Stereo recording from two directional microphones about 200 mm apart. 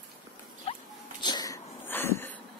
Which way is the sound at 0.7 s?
30° left (ahead or behind).